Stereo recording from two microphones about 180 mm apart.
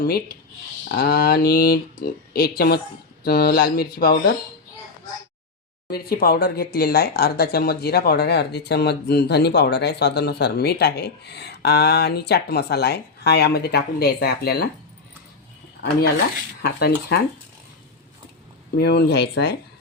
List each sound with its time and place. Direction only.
0.0 s speech: 60° left (ahead or behind)
5.9 s speech: 60° left (ahead or behind)
15.8 s speech: 70° left (ahead or behind)
18.8 s speech: 65° left (ahead or behind)